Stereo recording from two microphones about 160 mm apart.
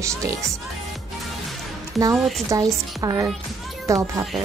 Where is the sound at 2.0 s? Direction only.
20° right (ahead or behind).